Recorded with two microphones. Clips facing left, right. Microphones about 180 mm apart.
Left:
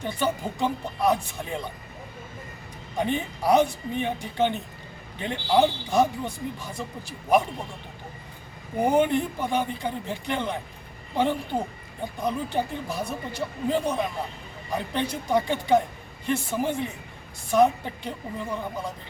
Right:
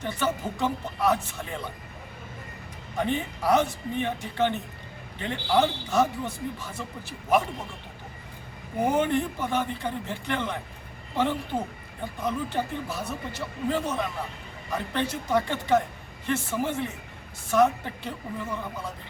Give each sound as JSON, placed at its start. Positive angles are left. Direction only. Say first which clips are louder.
{"t": 0.0, "sound": "speech", "louder": "left 1 dB", "side_deg": 15}
{"t": 3.0, "sound": "speech", "louder": "left 1 dB", "side_deg": 15}
{"t": 8.8, "sound": "speech", "louder": "left 2 dB", "side_deg": 15}
{"t": 12.2, "sound": "speech", "louder": "left 2 dB", "side_deg": 15}